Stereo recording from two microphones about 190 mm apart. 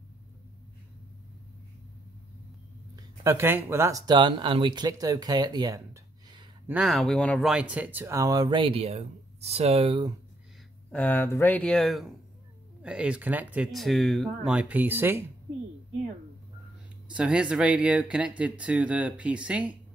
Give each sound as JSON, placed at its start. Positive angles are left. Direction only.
{"t": 3.0, "sound": "speech", "side_deg": -15}
{"t": 6.7, "sound": "speech", "side_deg": -5}
{"t": 10.9, "sound": "speech", "side_deg": 10}
{"t": 17.1, "sound": "speech", "side_deg": -5}